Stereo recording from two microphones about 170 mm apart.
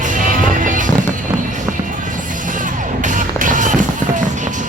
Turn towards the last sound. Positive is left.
turn(degrees=-50)  # may be behind; listen again after turning